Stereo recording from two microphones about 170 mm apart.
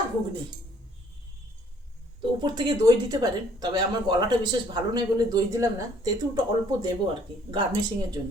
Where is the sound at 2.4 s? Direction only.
25° right (ahead or behind).